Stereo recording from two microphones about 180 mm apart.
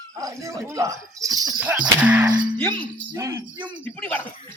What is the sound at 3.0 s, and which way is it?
Jingle bell, 20° right (ahead or behind).